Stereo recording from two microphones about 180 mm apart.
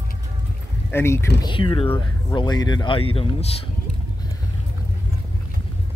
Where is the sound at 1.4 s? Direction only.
25° left (ahead or behind).